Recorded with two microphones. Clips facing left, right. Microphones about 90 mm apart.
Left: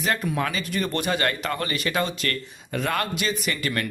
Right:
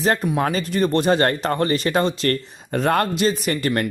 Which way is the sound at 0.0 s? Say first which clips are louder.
Right 5 dB; 35° right (ahead or behind).